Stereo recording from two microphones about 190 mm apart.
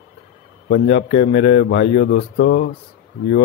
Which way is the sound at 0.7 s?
65° left (ahead or behind).